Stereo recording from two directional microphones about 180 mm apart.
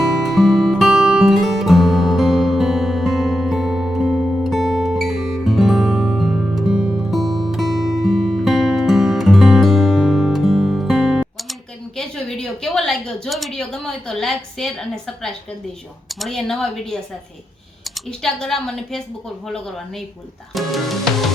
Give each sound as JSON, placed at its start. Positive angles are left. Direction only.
{"t": 0.0, "sound": "music", "side_deg": 0}
{"t": 11.9, "sound": "a sound", "side_deg": 5}
{"t": 16.1, "sound": "speech", "side_deg": 0}
{"t": 20.5, "sound": "speech", "side_deg": 0}